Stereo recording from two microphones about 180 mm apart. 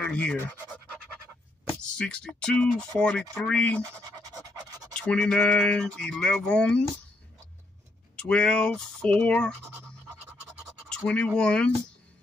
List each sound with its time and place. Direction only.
0.0 s speech: 5° left (ahead or behind)
2.0 s speech: 5° left (ahead or behind)
4.2 s pant: 20° right (ahead or behind)
4.9 s speech: 5° left (ahead or behind)
8.2 s speech: 5° left (ahead or behind)
10.8 s scratch: 5° right (ahead or behind)
11.1 s speech: 5° left (ahead or behind)